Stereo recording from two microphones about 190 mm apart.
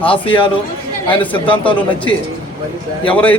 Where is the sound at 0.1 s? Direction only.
25° left (ahead or behind).